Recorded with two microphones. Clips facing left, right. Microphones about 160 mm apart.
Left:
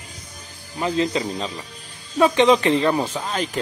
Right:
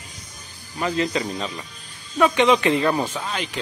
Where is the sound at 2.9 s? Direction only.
10° left (ahead or behind).